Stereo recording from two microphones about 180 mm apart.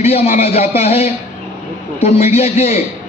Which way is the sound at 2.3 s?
35° left (ahead or behind).